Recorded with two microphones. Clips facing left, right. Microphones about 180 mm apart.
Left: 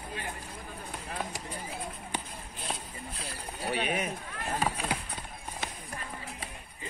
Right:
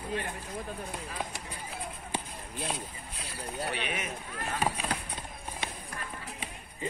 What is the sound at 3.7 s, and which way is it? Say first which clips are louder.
Speech: left 4 dB; 45° left (ahead or behind).